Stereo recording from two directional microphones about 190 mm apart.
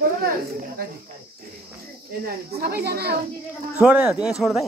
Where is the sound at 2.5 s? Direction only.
55° right (ahead or behind).